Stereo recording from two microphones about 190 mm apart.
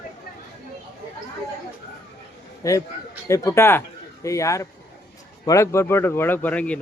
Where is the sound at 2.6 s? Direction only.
15° left (ahead or behind).